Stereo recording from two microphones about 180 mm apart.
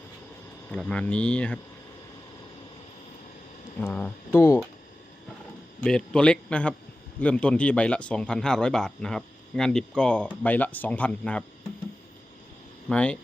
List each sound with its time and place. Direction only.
0.7 s a man's voice: 5° left (ahead or behind)
3.8 s speech: 10° left (ahead or behind)
5.8 s a man's voice: 5° left (ahead or behind)
12.9 s speech: 5° left (ahead or behind)